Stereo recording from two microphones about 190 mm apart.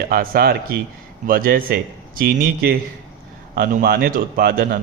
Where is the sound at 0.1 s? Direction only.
50° right (ahead or behind).